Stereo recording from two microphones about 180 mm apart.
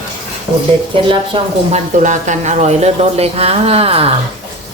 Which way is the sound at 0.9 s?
30° right (ahead or behind).